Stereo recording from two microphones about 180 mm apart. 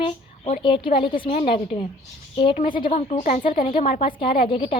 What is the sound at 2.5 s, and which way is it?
A woman's voice, 50° left (ahead or behind).